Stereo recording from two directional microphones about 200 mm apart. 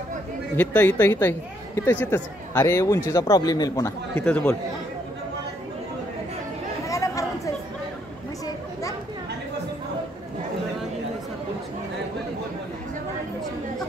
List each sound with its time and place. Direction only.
0.6 s speech: 10° left (ahead or behind)
6.9 s chatter: 15° left (ahead or behind)